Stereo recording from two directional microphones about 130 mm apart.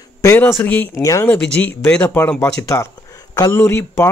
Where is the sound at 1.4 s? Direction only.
10° left (ahead or behind).